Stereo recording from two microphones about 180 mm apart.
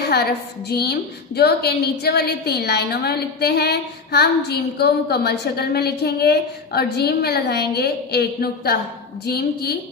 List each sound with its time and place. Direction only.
0.0 s a woman's voice: 65° left (ahead or behind)